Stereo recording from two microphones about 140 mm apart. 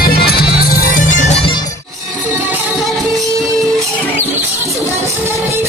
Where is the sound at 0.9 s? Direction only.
65° left (ahead or behind).